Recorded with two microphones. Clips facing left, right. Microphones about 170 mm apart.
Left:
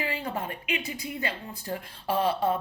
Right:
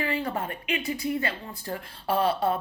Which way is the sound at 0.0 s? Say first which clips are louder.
Right 3 dB; 50° right (ahead or behind).